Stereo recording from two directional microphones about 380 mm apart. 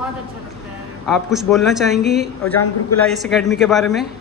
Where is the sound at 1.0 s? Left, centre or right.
Centre.